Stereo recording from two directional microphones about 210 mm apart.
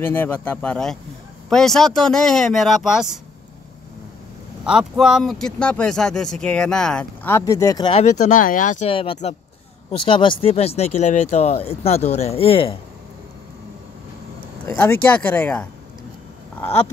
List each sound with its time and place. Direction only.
0.0 s speech: 10° left (ahead or behind)
4.6 s speech: centre (ahead or behind); by 8.0 s 20° left (ahead or behind)
8.0 s speech: 35° left (ahead or behind)
14.7 s speech: 10° left (ahead or behind)